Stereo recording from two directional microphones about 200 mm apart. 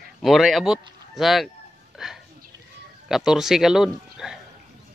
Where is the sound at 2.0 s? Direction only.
Centre (ahead or behind).